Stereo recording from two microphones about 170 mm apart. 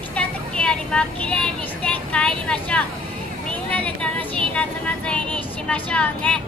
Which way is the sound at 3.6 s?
10° left (ahead or behind).